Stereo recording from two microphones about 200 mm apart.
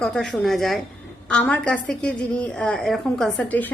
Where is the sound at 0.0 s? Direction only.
5° left (ahead or behind).